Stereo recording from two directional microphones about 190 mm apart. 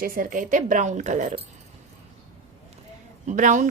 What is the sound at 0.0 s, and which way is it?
A woman's voice, 45° right (ahead or behind).